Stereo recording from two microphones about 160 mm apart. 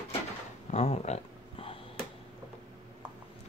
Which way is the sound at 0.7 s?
40° left (ahead or behind).